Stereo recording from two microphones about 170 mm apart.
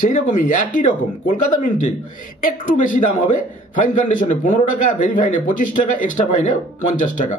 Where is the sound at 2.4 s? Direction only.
55° left (ahead or behind).